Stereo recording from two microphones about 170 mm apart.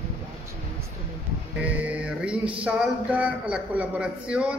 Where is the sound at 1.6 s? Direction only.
10° right (ahead or behind).